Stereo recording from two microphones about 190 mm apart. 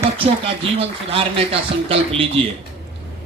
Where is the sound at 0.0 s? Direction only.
30° right (ahead or behind).